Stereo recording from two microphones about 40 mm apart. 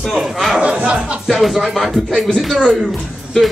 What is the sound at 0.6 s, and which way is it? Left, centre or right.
Speech, right.